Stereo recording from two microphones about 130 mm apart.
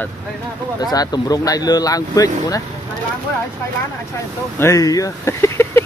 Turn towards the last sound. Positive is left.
turn(degrees=20)  # may be behind; listen again after turning